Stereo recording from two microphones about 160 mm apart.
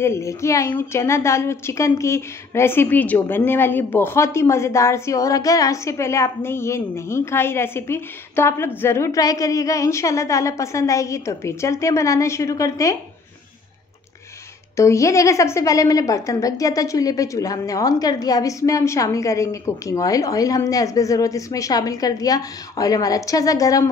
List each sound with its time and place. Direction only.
0.0 s a woman's voice: 20° left (ahead or behind)
14.8 s a woman's voice: 20° left (ahead or behind)